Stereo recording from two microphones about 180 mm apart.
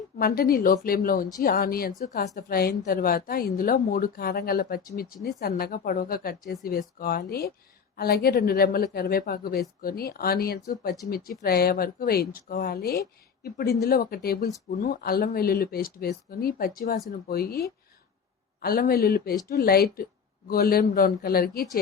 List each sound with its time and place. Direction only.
0.2 s speech: 55° left (ahead or behind)